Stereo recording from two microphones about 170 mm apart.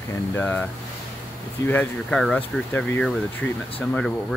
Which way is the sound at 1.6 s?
10° left (ahead or behind).